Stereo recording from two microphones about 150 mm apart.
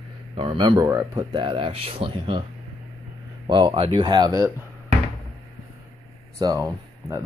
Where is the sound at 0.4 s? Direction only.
35° right (ahead or behind).